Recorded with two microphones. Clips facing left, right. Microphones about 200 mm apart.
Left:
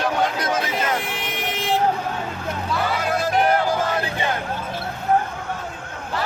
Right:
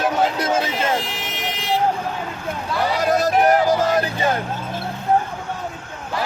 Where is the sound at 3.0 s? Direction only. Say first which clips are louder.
Right 5 dB; 40° right (ahead or behind).